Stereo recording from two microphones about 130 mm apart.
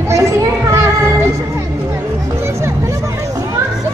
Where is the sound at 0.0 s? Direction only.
25° right (ahead or behind).